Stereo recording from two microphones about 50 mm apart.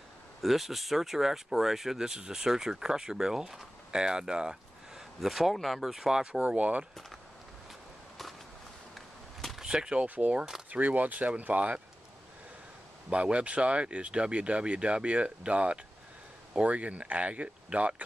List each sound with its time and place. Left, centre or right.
0.4 s speech: centre
6.5 s speech: right
8.9 s a sound: centre
9.6 s speech: centre
10.0 s speech: right
13.1 s speech: right